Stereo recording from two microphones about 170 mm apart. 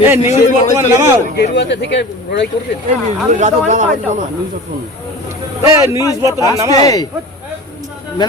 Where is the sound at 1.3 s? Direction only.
85° left.